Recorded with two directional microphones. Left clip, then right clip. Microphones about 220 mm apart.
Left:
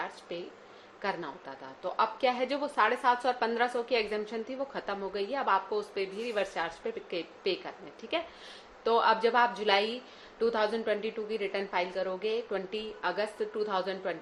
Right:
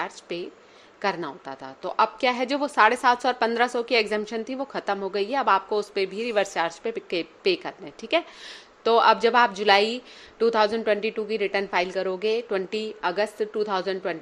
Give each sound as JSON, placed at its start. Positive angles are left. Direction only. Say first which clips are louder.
{"t": 0.0, "sound": "a woman's voice", "louder": "right 7 dB", "side_deg": -45}